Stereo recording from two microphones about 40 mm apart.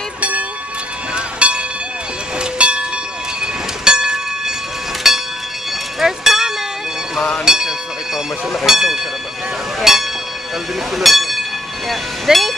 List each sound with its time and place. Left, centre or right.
0.2 s vehicle: right
1.1 s train: right; by 5.2 s centre
5.9 s a sound: centre
9.8 s train: centre
11.0 s a sound: centre
11.9 s train: centre